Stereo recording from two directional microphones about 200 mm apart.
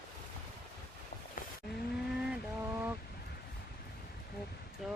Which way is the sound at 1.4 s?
45° left (ahead or behind).